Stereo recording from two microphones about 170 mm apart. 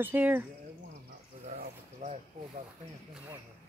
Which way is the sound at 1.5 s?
45° right (ahead or behind).